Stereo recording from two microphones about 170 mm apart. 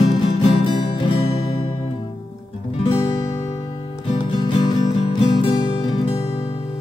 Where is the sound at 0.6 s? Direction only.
30° left (ahead or behind).